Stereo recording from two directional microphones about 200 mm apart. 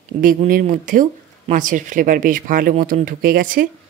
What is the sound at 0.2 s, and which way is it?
Speech, 45° right (ahead or behind).